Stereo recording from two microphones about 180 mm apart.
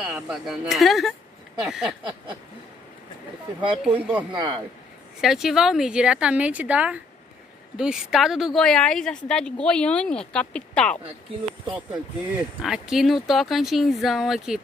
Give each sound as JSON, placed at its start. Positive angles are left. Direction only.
{"t": 0.0, "sound": "speech", "side_deg": 0}
{"t": 3.8, "sound": "speech", "side_deg": -10}
{"t": 4.3, "sound": "speech", "side_deg": -25}
{"t": 5.2, "sound": "speech", "side_deg": 0}
{"t": 11.7, "sound": "speech", "side_deg": -10}